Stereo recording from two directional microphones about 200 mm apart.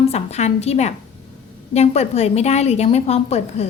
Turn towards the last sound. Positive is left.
turn(degrees=30)  # may be behind; listen again after turning